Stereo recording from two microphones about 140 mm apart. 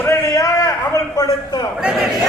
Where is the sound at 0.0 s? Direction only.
25° left (ahead or behind).